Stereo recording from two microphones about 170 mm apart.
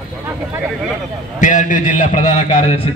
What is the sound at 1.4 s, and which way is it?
A man's voice, 50° left (ahead or behind).